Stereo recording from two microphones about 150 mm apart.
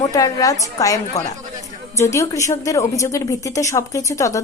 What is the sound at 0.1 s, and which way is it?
A woman's voice, 20° left (ahead or behind).